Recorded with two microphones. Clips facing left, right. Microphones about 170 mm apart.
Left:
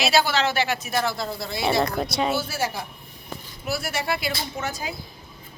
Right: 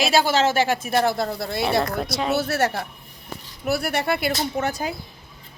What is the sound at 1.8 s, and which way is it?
Speech, centre (ahead or behind).